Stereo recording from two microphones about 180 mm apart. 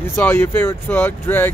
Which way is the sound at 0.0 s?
10° left (ahead or behind).